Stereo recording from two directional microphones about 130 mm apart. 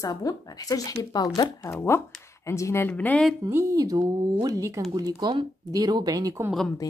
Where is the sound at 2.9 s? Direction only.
10° left (ahead or behind).